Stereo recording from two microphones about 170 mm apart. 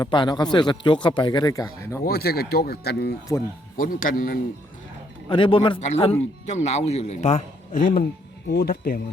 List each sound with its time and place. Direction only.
0.0 s a man's voice: 25° left (ahead or behind)
2.0 s speech: 65° left (ahead or behind)
3.8 s a man's voice: 55° left (ahead or behind)
5.3 s speech: 30° left (ahead or behind); by 8.0 s 50° left (ahead or behind)
8.4 s a man's voice: 65° left (ahead or behind)